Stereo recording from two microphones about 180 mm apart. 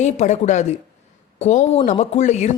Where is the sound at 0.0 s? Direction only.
40° left (ahead or behind).